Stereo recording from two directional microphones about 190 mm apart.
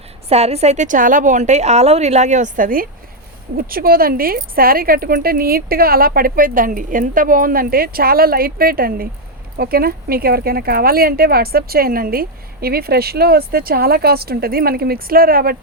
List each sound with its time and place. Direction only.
0.3 s a woman's voice: 35° right (ahead or behind); by 15.5 s 50° right (ahead or behind)